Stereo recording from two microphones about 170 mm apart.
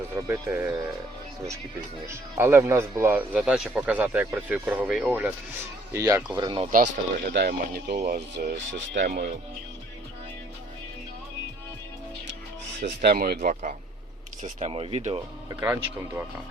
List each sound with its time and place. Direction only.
0.3 s speech: 10° right (ahead or behind)
2.4 s speech: 15° right (ahead or behind)
6.3 s speech: 25° right (ahead or behind)
6.7 s speech: 55° right (ahead or behind)
7.9 s speech: 45° right (ahead or behind)
8.5 s speech: 85° right
12.8 s speech: 65° right (ahead or behind)
14.4 s speech: 35° right (ahead or behind)
15.6 s speech: 15° right (ahead or behind)